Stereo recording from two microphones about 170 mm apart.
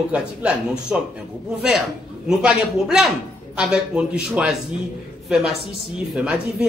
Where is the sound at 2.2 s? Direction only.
5° right (ahead or behind).